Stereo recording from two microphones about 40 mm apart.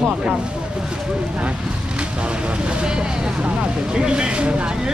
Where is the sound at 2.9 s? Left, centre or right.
Right.